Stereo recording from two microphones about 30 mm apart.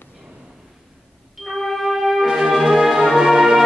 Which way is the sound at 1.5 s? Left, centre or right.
Centre.